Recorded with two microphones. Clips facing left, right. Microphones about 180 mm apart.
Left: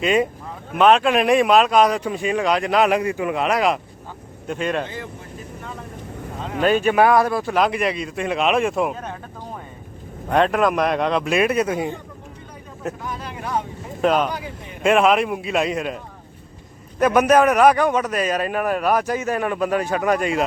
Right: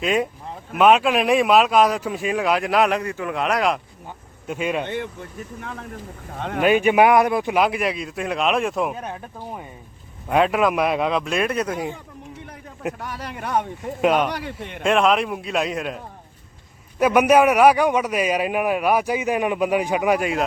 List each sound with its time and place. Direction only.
0.0 s a man's voice: centre (ahead or behind)
2.9 s a man's voice: 10° left (ahead or behind)
3.3 s a man's voice: centre (ahead or behind)
6.6 s a man's voice: 15° right (ahead or behind)
9.0 s a man's voice: 10° right (ahead or behind); by 11.9 s 5° left (ahead or behind)
13.0 s vehicle: 70° right (ahead or behind)
14.0 s a man's voice: 10° right (ahead or behind)
14.3 s a man's voice: 75° right (ahead or behind)
14.8 s a man's voice: 5° left (ahead or behind)
17.0 s a man's voice: 10° right (ahead or behind)